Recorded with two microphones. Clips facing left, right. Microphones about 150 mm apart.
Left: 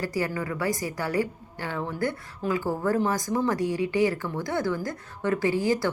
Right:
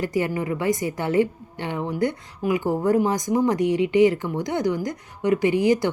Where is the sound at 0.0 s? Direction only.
20° right (ahead or behind).